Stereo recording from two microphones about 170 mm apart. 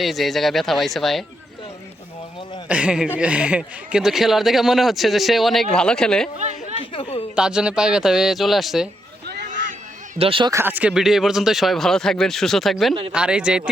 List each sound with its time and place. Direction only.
0.0 s speech: centre (ahead or behind)
2.6 s a man's voice: 5° right (ahead or behind)
6.9 s a woman's voice: 30° left (ahead or behind)
7.3 s speech: 5° right (ahead or behind)
9.2 s a sound: 75° right (ahead or behind)
10.2 s speech: 30° right (ahead or behind)
10.5 s speech: 10° right (ahead or behind)